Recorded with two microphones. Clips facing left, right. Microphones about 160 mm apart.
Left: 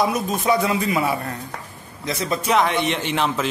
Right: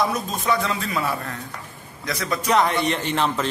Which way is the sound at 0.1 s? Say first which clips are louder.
Left 3 dB; 20° left (ahead or behind).